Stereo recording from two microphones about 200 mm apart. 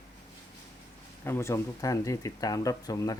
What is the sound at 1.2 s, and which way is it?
Speech, 15° left (ahead or behind).